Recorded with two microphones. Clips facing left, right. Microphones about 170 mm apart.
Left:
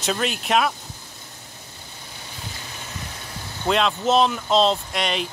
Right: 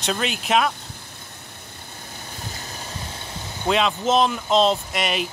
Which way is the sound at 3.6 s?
Centre (ahead or behind).